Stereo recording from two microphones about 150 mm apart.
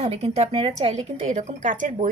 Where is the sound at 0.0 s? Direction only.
40° right (ahead or behind).